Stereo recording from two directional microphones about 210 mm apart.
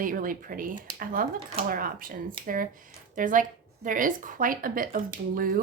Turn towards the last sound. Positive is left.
turn(degrees=-40)  # may be behind; listen again after turning